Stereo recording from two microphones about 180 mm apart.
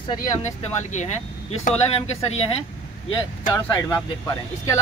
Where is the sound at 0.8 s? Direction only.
40° left (ahead or behind).